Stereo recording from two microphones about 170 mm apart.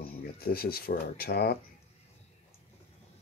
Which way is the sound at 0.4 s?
65° left (ahead or behind).